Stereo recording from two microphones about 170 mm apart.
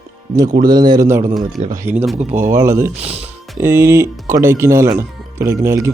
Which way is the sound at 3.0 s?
35° right (ahead or behind).